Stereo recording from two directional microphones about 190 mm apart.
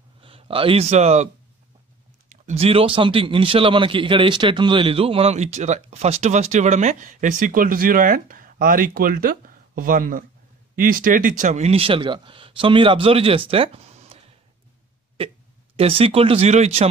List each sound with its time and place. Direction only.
0.2 s a man's voice: 30° right (ahead or behind)
15.1 s speech: 30° right (ahead or behind)